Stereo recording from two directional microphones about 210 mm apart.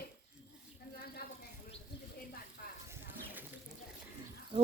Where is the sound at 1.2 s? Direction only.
50° left (ahead or behind).